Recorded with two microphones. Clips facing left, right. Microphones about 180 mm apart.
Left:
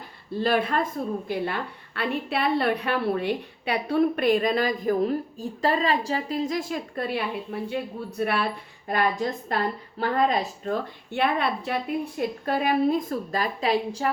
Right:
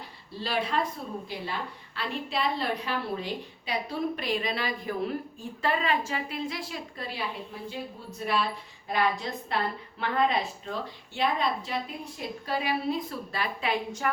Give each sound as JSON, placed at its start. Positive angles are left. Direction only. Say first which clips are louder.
{"t": 0.3, "sound": "a woman's voice", "louder": "left 6 dB", "side_deg": 55}
{"t": 8.9, "sound": "a woman's voice", "louder": "left 3 dB", "side_deg": 50}